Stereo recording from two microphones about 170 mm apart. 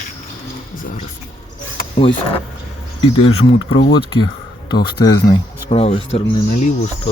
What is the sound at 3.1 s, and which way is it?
Speech, 35° left (ahead or behind).